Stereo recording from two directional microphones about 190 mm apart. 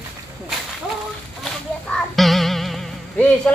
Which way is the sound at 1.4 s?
Centre (ahead or behind).